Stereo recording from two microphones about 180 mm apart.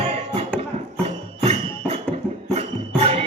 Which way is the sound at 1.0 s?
35° right (ahead or behind).